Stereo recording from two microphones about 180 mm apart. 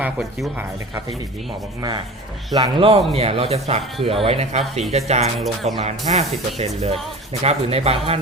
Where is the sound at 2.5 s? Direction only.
25° right (ahead or behind).